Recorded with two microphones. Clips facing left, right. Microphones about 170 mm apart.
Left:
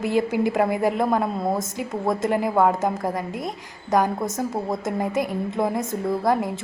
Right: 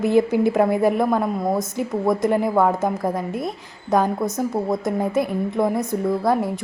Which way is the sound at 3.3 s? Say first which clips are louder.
Right 3 dB; 20° left (ahead or behind).